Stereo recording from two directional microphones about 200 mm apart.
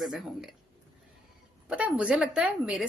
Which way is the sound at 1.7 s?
5° right (ahead or behind).